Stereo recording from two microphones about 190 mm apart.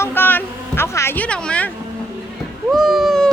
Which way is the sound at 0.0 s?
10° left (ahead or behind).